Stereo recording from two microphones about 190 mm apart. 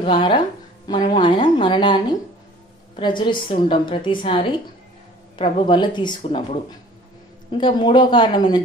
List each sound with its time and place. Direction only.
0.0 s a woman's voice: 25° left (ahead or behind)